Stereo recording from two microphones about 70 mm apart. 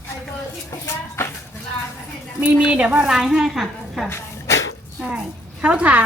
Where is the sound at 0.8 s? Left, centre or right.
Left.